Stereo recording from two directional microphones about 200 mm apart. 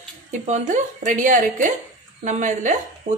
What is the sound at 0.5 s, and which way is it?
A woman's voice, 40° right (ahead or behind).